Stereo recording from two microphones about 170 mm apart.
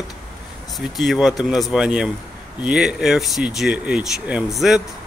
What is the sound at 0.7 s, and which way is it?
Speech, centre (ahead or behind).